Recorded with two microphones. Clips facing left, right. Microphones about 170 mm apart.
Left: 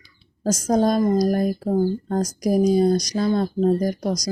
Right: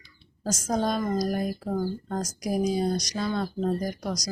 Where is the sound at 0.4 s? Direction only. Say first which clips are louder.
Left 8 dB; 40° left (ahead or behind).